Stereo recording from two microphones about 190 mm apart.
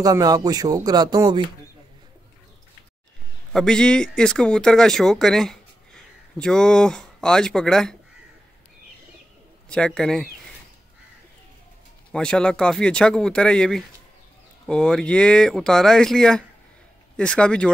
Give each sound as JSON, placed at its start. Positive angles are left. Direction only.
{"t": 0.0, "sound": "speech", "side_deg": -20}
{"t": 3.5, "sound": "speech", "side_deg": 5}
{"t": 9.7, "sound": "speech", "side_deg": 5}
{"t": 12.1, "sound": "speech", "side_deg": 5}